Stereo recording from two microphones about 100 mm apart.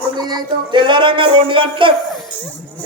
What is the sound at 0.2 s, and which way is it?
Speech, 40° right (ahead or behind).